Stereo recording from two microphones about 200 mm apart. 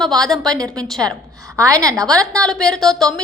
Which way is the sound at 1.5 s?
15° right (ahead or behind).